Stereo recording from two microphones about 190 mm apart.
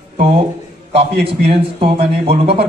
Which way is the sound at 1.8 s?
30° right (ahead or behind).